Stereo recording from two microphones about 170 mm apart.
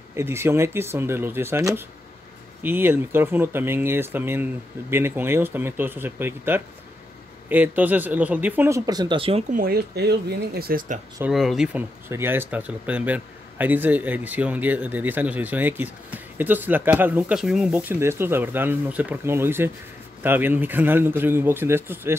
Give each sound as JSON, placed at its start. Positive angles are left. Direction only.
{"t": 0.1, "sound": "a man's voice", "side_deg": -15}
{"t": 9.5, "sound": "speech", "side_deg": -60}
{"t": 11.2, "sound": "a man's voice", "side_deg": 0}